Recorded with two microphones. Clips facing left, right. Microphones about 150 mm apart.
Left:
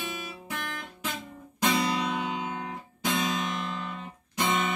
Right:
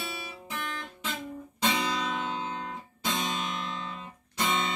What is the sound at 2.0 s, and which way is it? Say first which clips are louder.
Music: left 2 dB; 10° left (ahead or behind).